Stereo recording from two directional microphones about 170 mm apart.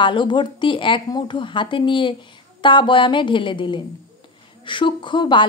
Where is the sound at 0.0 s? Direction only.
30° left (ahead or behind).